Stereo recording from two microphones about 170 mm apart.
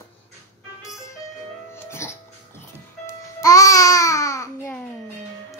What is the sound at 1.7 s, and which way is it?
Music, 15° left (ahead or behind).